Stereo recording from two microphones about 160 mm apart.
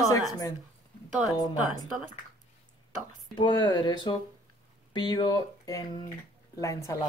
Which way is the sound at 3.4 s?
30° left (ahead or behind).